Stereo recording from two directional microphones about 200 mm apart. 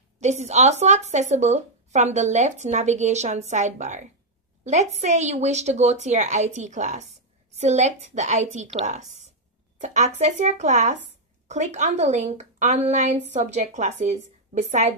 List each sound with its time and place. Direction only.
0.2 s speech: 35° right (ahead or behind)